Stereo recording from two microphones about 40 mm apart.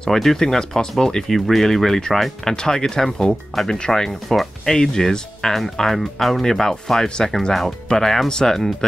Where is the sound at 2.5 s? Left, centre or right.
Centre.